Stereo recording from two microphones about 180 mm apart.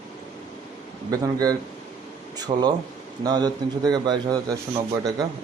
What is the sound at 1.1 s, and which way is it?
A man's voice, 20° right (ahead or behind).